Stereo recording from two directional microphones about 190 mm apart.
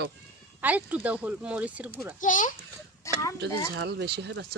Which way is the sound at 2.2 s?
45° left (ahead or behind).